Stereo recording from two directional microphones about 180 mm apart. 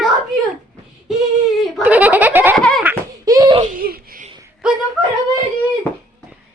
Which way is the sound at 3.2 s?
20° right (ahead or behind).